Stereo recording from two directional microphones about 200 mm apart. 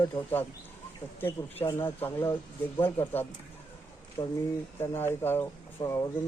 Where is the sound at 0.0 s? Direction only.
15° left (ahead or behind).